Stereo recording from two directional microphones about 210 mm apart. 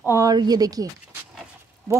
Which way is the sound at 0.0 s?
15° right (ahead or behind).